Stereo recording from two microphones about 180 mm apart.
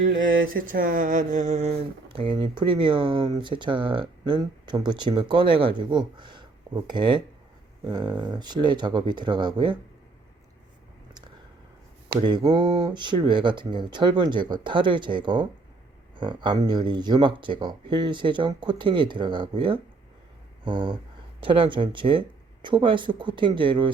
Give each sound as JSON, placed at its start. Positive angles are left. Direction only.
{"t": 0.0, "sound": "a sound", "side_deg": -90}
{"t": 0.4, "sound": "speech", "side_deg": -50}
{"t": 12.2, "sound": "speech", "side_deg": -25}